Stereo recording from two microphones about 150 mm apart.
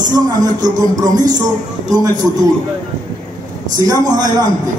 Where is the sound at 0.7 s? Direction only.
25° right (ahead or behind).